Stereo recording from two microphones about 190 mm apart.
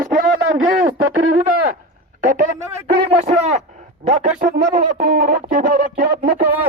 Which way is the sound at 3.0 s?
35° right (ahead or behind).